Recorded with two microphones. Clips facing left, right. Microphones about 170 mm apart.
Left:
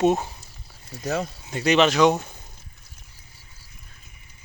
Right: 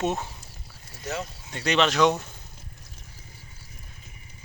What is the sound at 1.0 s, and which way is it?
Speech, 45° left (ahead or behind).